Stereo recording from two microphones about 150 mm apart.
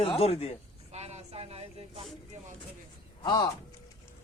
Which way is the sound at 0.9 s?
50° right (ahead or behind).